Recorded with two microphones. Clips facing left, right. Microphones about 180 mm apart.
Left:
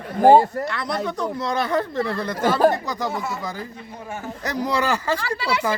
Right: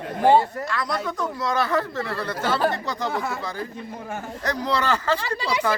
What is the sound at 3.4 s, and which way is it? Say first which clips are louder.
A man's voice: even; 10° left (ahead or behind).